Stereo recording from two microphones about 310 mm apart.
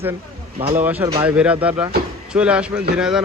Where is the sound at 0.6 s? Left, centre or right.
Right.